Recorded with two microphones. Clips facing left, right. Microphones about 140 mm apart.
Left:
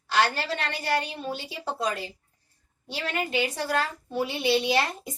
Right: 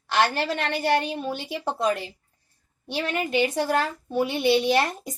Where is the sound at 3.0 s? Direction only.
50° right (ahead or behind).